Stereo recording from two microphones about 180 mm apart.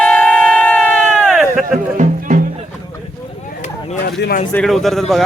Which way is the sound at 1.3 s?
5° right (ahead or behind).